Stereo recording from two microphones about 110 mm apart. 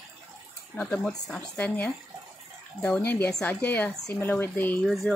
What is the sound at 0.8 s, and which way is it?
A woman's voice, 5° left (ahead or behind).